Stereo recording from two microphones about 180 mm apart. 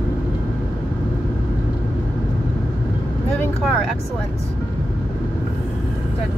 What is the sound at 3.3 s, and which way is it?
Speech, 5° left (ahead or behind).